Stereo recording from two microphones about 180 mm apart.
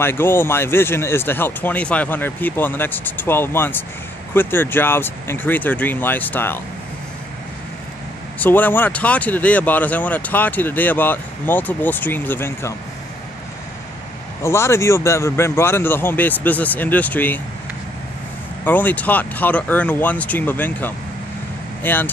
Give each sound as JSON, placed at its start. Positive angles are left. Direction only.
{"t": 0.0, "sound": "speech", "side_deg": 10}
{"t": 8.4, "sound": "speech", "side_deg": 10}
{"t": 14.4, "sound": "speech", "side_deg": 15}
{"t": 18.6, "sound": "speech", "side_deg": 10}